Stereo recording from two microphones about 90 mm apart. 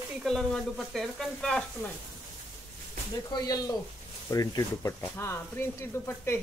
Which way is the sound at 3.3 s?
45° left (ahead or behind).